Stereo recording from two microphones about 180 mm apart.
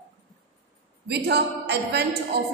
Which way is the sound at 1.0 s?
65° right (ahead or behind).